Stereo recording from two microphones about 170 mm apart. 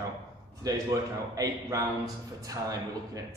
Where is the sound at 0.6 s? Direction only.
20° right (ahead or behind).